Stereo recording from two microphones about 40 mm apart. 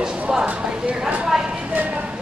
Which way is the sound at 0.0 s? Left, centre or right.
Centre.